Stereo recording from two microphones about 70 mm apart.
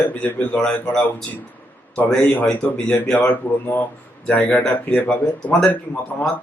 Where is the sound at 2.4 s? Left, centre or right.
Centre.